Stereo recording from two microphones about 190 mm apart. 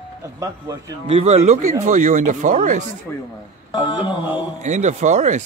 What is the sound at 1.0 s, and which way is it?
Speech, 35° right (ahead or behind).